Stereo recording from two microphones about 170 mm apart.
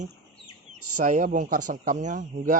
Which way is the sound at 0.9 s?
50° right (ahead or behind).